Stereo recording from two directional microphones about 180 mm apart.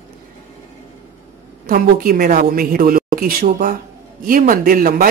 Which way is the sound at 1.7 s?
50° right (ahead or behind).